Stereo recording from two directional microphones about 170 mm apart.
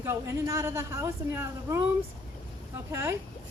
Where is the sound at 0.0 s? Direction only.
15° right (ahead or behind).